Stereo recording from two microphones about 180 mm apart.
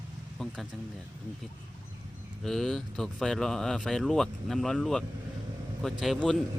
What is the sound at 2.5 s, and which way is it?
Speech, centre (ahead or behind).